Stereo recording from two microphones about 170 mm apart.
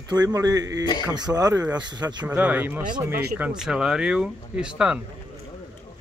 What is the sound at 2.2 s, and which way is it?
A man's voice, 10° right (ahead or behind).